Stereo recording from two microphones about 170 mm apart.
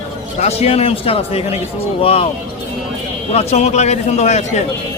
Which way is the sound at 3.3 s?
40° left (ahead or behind).